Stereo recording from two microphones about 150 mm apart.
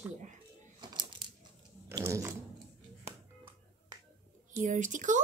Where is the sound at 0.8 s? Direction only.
30° right (ahead or behind).